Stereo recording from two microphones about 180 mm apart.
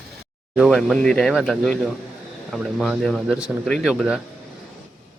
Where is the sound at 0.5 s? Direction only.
Centre (ahead or behind).